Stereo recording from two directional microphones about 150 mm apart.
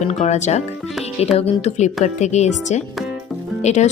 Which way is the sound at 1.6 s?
50° left (ahead or behind).